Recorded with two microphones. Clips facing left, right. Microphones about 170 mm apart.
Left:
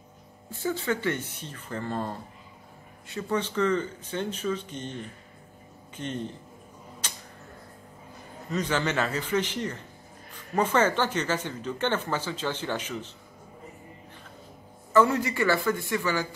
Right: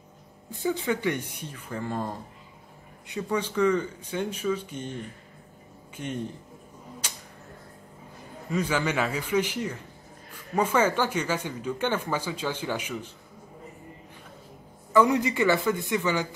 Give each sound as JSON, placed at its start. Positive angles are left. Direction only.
{"t": 0.5, "sound": "speech", "side_deg": -15}
{"t": 5.9, "sound": "a man's voice", "side_deg": -10}
{"t": 7.0, "sound": "a sound", "side_deg": -10}
{"t": 8.5, "sound": "speech", "side_deg": -10}
{"t": 14.9, "sound": "speech", "side_deg": -15}